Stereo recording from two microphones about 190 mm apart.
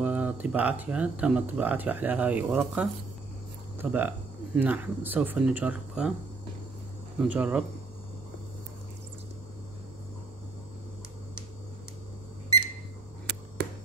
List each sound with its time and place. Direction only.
0.0 s speech: 5° right (ahead or behind)
7.2 s speech: 10° right (ahead or behind)
13.6 s a sound: 60° right (ahead or behind)